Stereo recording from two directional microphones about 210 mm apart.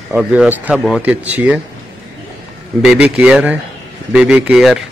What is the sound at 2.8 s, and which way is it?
A man's voice, 5° right (ahead or behind).